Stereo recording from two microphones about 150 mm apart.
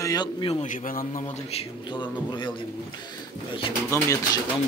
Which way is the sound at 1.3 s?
40° left (ahead or behind).